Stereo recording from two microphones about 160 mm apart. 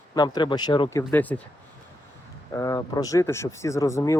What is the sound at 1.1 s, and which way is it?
Speech, 10° left (ahead or behind).